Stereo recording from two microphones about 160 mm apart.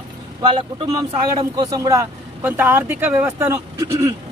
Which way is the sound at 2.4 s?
10° right (ahead or behind).